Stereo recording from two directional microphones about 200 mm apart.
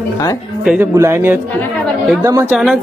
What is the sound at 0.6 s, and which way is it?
Speech, 5° right (ahead or behind).